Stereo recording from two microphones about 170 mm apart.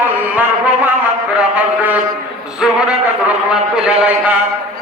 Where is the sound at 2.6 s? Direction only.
5° right (ahead or behind).